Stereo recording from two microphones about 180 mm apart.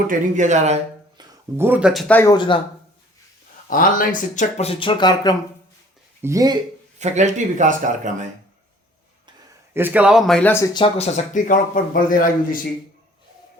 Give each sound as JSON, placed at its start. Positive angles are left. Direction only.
{"t": 0.1, "sound": "a man's voice", "side_deg": -40}
{"t": 1.5, "sound": "speech", "side_deg": -10}
{"t": 2.3, "sound": "speech", "side_deg": 25}
{"t": 3.7, "sound": "speech", "side_deg": 50}
{"t": 6.2, "sound": "speech", "side_deg": -20}
{"t": 7.0, "sound": "a man's voice", "side_deg": -40}
{"t": 9.7, "sound": "speech", "side_deg": -10}
{"t": 10.8, "sound": "a man's voice", "side_deg": 30}